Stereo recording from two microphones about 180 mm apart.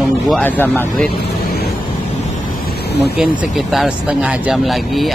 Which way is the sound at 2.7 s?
60° left (ahead or behind).